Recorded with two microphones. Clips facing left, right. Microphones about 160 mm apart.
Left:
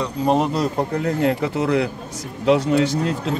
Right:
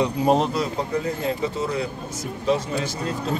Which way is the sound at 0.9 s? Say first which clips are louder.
Left 4 dB; 70° left (ahead or behind).